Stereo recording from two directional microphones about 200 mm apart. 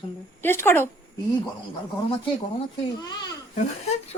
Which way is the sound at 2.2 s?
25° left (ahead or behind).